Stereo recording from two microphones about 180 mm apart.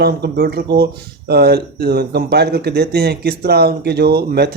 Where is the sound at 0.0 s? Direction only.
65° right (ahead or behind).